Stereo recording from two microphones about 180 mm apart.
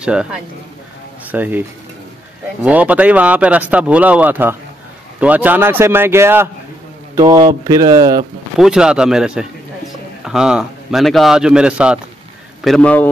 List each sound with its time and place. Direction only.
0.0 s a man's voice: 5° right (ahead or behind)
2.6 s speech: 10° right (ahead or behind)
7.2 s speech: 25° right (ahead or behind)
8.5 s a man's voice: 5° right (ahead or behind)